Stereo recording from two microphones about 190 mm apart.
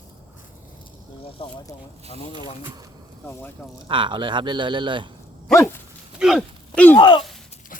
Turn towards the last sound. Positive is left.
turn(degrees=25)  # may be behind; listen again after turning